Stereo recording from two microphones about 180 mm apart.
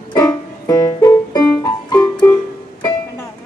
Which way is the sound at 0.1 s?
20° left (ahead or behind).